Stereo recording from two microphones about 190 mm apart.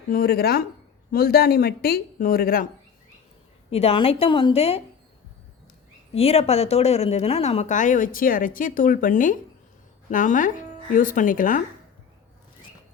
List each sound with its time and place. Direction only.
0.1 s speech: 55° left (ahead or behind)
3.7 s speech: 30° left (ahead or behind)
6.1 s speech: 30° left (ahead or behind)